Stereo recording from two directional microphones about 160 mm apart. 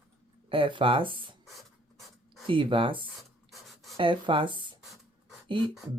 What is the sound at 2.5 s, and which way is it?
Speech, 30° right (ahead or behind).